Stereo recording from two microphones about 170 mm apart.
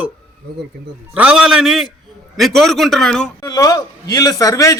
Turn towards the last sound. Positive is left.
turn(degrees=20)  # may be behind; listen again after turning